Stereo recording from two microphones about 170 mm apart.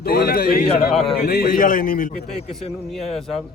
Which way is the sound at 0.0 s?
65° left (ahead or behind).